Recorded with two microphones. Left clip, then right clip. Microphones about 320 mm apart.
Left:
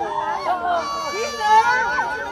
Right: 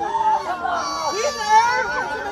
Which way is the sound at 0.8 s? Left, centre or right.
Left.